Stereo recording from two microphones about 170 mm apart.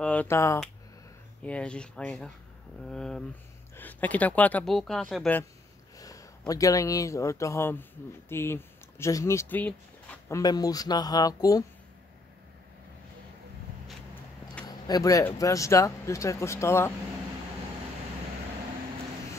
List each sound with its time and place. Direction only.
0.0 s speech: 10° left (ahead or behind)
5.9 s speech: 20° left (ahead or behind)
14.7 s speech: 20° left (ahead or behind)